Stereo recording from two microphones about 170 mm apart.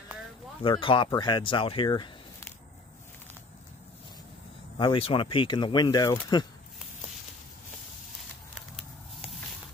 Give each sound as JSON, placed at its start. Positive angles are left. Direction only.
{"t": 0.6, "sound": "speech", "side_deg": 30}
{"t": 4.7, "sound": "speech", "side_deg": 30}
{"t": 8.5, "sound": "a sound", "side_deg": 0}